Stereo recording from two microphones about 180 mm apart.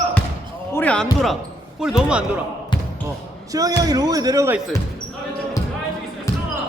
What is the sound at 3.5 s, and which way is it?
Speech, 20° right (ahead or behind).